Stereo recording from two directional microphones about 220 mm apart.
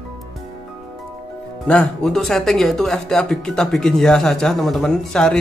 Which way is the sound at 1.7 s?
5° left (ahead or behind).